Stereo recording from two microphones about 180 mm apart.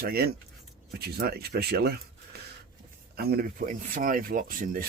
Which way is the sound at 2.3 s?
65° right (ahead or behind).